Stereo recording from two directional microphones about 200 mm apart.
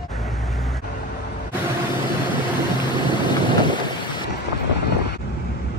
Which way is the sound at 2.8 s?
25° left (ahead or behind).